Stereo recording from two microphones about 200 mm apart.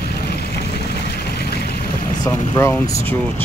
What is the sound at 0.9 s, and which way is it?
Vehicle, 55° left (ahead or behind).